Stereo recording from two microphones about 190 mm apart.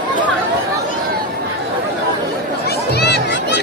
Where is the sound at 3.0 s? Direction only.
60° left (ahead or behind).